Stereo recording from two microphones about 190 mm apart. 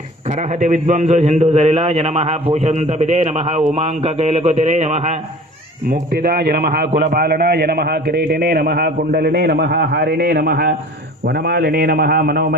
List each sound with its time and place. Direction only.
0.3 s a man's voice: 40° right (ahead or behind)
5.9 s a man's voice: 55° right (ahead or behind)